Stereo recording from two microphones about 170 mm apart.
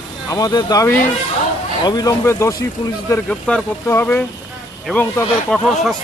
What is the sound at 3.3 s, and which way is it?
Speech, 5° left (ahead or behind).